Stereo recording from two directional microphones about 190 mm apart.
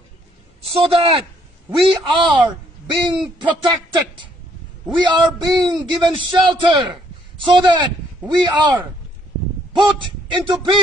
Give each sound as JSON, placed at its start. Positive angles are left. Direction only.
{"t": 0.6, "sound": "a man's voice", "side_deg": -30}